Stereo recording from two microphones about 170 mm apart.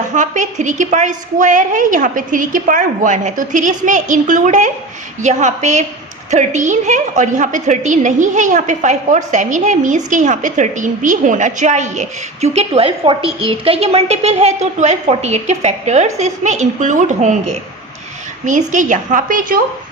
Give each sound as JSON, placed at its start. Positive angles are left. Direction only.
{"t": 0.1, "sound": "a woman's voice", "side_deg": -45}